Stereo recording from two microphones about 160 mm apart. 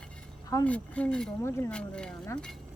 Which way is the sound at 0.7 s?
10° left (ahead or behind).